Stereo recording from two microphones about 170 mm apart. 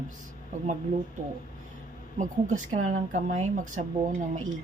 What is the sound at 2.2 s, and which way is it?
A woman's voice, 45° right (ahead or behind).